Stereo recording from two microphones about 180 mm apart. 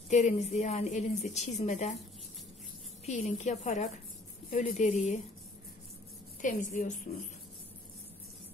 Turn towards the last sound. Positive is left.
turn(degrees=45)  # may be behind; listen again after turning